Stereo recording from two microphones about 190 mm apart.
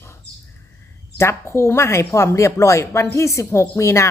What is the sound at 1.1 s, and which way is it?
Speech, 15° left (ahead or behind).